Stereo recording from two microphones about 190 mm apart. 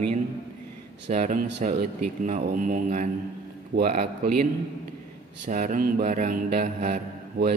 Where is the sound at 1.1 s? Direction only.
45° right (ahead or behind).